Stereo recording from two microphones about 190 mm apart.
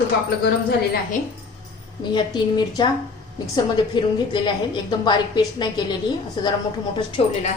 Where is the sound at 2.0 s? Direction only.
25° left (ahead or behind).